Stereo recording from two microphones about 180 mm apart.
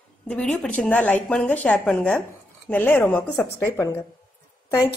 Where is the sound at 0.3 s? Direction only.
5° left (ahead or behind).